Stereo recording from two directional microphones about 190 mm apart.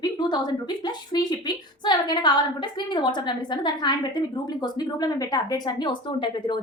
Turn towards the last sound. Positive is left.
turn(degrees=25)  # may be behind; listen again after turning